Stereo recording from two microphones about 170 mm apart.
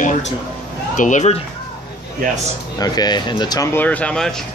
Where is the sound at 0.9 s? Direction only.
45° left (ahead or behind).